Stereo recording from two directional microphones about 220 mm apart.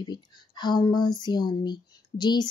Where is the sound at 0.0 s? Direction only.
20° left (ahead or behind).